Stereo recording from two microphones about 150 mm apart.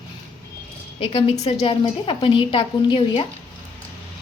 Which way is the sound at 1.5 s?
35° left (ahead or behind).